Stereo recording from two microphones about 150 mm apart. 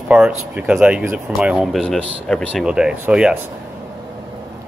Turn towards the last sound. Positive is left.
turn(degrees=-10)  # may be behind; listen again after turning